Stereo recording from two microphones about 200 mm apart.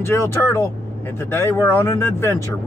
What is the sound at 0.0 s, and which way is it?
Speech, 15° left (ahead or behind).